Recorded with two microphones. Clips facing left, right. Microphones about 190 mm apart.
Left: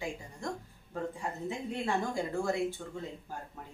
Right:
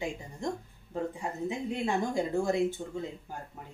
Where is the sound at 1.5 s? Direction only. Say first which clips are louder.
Right 2 dB; 20° right (ahead or behind).